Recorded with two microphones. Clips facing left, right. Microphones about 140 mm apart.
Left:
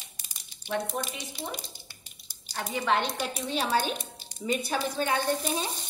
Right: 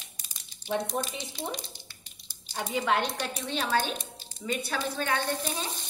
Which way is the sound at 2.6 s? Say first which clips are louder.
Even; 10° right (ahead or behind).